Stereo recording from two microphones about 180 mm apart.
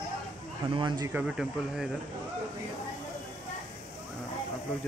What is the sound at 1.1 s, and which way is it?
Speech, 5° right (ahead or behind).